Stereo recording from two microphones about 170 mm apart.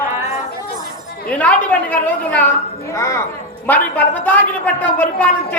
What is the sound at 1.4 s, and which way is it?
A woman's voice, 10° left (ahead or behind).